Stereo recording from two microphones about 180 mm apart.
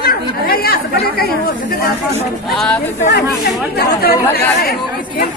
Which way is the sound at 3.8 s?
60° left (ahead or behind).